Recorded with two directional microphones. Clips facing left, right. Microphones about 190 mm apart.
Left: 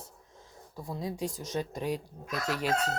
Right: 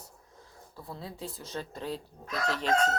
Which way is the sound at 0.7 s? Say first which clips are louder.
Left 6 dB; 15° left (ahead or behind).